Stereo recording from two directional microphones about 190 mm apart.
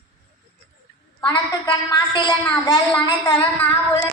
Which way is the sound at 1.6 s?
25° left (ahead or behind).